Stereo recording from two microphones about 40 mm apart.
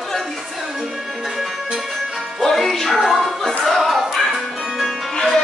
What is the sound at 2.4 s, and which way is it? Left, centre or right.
Music, centre.